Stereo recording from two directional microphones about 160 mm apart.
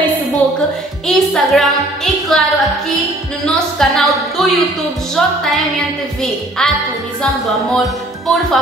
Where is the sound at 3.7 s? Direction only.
Centre (ahead or behind).